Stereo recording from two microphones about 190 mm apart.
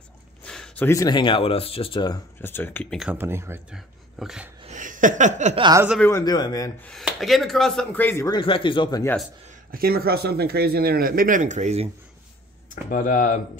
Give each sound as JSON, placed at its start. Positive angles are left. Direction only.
{"t": 0.4, "sound": "speech", "side_deg": 5}
{"t": 2.4, "sound": "speech", "side_deg": 10}
{"t": 3.1, "sound": "speech", "side_deg": -10}
{"t": 3.7, "sound": "speech", "side_deg": 0}
{"t": 4.6, "sound": "a sound", "side_deg": -40}
{"t": 5.6, "sound": "speech", "side_deg": -20}
{"t": 5.9, "sound": "speech", "side_deg": 15}
{"t": 6.8, "sound": "speech", "side_deg": 0}
{"t": 8.4, "sound": "speech", "side_deg": 25}
{"t": 9.0, "sound": "speech", "side_deg": 5}
{"t": 9.7, "sound": "speech", "side_deg": -50}
{"t": 12.9, "sound": "speech", "side_deg": 45}